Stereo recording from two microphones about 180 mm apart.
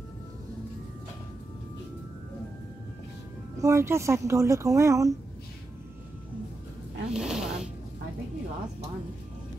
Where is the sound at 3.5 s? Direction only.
15° right (ahead or behind).